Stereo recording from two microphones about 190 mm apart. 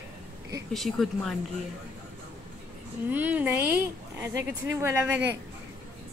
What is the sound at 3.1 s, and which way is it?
Speech, 10° right (ahead or behind).